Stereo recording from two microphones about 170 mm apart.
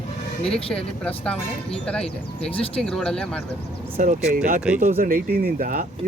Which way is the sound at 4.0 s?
50° right (ahead or behind).